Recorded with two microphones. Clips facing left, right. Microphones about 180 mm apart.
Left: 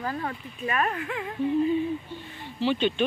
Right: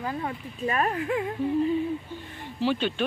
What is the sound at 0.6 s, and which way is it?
Speech, 30° right (ahead or behind).